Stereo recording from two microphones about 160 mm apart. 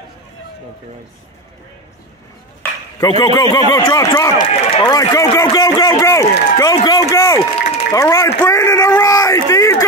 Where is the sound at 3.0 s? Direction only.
25° left (ahead or behind).